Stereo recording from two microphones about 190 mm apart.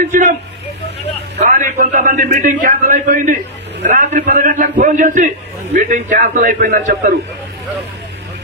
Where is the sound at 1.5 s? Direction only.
45° right (ahead or behind).